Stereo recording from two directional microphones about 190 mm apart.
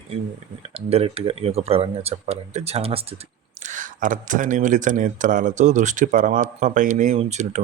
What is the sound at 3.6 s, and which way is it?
Speech, 40° right (ahead or behind).